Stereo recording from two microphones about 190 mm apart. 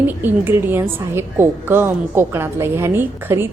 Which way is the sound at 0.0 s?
10° right (ahead or behind).